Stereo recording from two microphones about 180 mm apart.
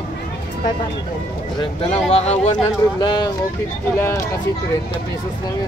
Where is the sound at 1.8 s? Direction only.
35° left (ahead or behind).